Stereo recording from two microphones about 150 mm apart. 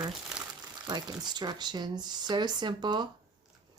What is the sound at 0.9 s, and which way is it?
Speech, 30° right (ahead or behind).